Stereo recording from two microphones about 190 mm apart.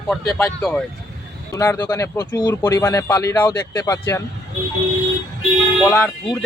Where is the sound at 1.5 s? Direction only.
15° left (ahead or behind).